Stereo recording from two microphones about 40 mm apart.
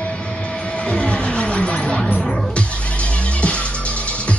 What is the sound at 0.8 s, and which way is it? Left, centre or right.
Vehicle, centre.